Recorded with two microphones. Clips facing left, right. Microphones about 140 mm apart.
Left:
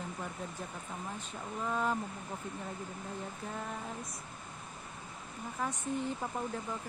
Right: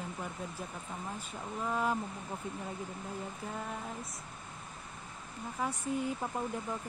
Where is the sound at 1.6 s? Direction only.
5° right (ahead or behind).